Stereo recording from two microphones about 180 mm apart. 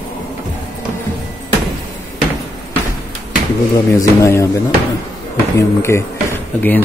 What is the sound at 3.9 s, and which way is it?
Speech, 15° left (ahead or behind).